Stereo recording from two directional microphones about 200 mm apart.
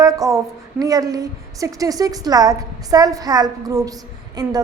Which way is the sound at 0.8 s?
15° right (ahead or behind).